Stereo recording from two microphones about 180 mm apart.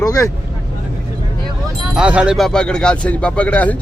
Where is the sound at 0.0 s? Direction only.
20° left (ahead or behind).